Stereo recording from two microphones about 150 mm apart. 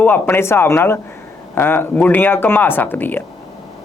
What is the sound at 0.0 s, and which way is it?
Speech, 15° left (ahead or behind).